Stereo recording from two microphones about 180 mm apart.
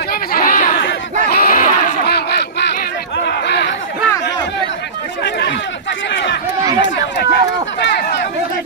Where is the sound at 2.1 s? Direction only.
65° left (ahead or behind).